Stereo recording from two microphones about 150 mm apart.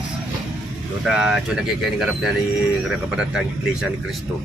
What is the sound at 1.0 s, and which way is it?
Speech, 5° right (ahead or behind).